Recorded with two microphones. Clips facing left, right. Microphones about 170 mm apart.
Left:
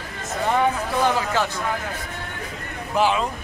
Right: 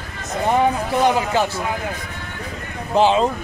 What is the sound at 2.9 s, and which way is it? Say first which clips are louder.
Speech: right 5 dB; 25° right (ahead or behind).